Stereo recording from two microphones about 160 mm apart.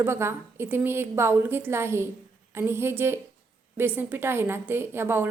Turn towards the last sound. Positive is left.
turn(degrees=-15)  # may be behind; listen again after turning